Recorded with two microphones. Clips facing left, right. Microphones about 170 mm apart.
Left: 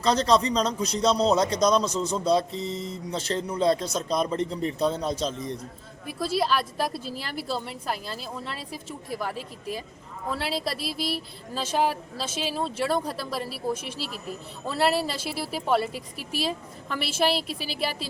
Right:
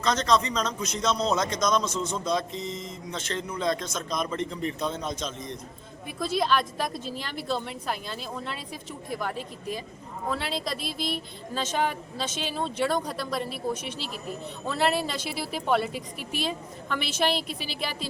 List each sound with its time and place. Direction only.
0.0 s speech: 35° left (ahead or behind)
6.1 s a woman's voice: 5° left (ahead or behind)